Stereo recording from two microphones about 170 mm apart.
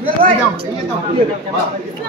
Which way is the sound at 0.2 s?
30° right (ahead or behind).